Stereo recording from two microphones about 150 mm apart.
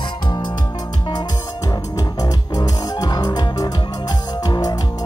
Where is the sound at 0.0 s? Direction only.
30° left (ahead or behind).